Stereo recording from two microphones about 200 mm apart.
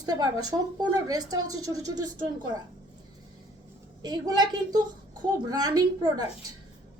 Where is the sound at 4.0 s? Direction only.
20° right (ahead or behind).